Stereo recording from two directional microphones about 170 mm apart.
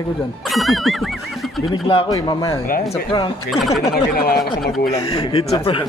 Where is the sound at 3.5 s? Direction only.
Centre (ahead or behind).